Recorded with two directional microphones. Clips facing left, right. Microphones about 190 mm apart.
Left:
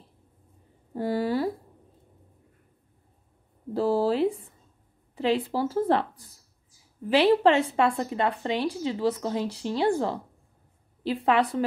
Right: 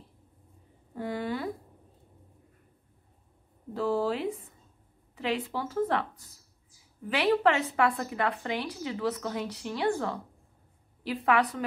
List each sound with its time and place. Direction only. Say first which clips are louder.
0.9 s a woman's voice: left 7 dB; 35° left (ahead or behind)
3.7 s a woman's voice: left 5 dB; 35° left (ahead or behind)